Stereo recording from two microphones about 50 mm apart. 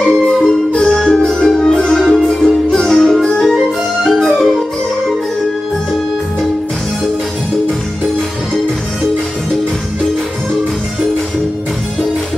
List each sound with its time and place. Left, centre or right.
0.0 s music: centre
4.0 s flute: centre